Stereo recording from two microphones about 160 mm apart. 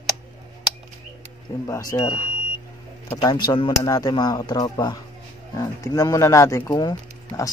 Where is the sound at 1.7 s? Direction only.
20° left (ahead or behind).